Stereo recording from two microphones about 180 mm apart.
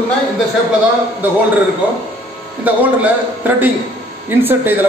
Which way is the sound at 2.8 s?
10° right (ahead or behind).